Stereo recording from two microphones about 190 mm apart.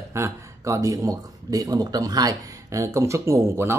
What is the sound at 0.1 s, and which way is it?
Speech, 15° right (ahead or behind).